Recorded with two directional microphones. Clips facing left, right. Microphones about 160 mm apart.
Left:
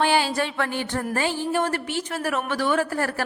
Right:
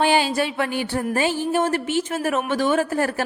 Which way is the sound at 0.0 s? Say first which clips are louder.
Right 2 dB; 15° right (ahead or behind).